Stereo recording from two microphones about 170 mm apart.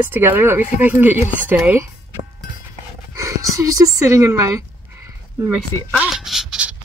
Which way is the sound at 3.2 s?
20° right (ahead or behind).